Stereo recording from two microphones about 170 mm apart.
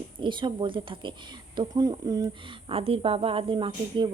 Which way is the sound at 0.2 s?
30° right (ahead or behind).